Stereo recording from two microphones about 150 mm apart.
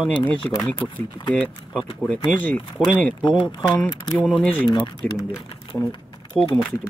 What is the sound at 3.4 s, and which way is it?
Speech, 30° left (ahead or behind).